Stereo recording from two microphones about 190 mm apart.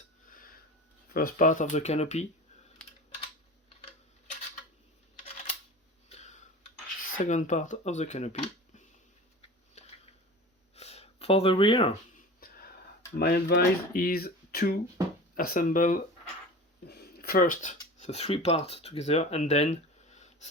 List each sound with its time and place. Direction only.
0.3 s a sound: 50° left (ahead or behind)
1.1 s speech: 45° left (ahead or behind)
6.1 s tick-tock: 35° left (ahead or behind)
7.1 s speech: 40° left (ahead or behind)
9.8 s a sound: 35° left (ahead or behind)
12.4 s whispering: 50° left (ahead or behind)
13.1 s speech: 60° left (ahead or behind)
16.8 s a sound: 60° left (ahead or behind); by 17.7 s 40° left (ahead or behind)
17.9 s speech: 35° left (ahead or behind)